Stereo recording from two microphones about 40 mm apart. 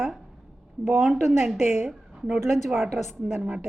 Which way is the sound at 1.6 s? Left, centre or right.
Right.